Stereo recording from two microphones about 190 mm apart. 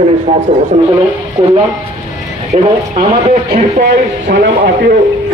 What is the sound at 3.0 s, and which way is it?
Speech, 35° right (ahead or behind).